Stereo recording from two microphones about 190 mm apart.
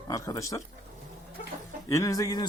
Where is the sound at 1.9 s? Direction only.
15° left (ahead or behind).